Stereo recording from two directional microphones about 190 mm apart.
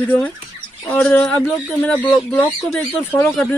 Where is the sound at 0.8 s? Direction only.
5° left (ahead or behind).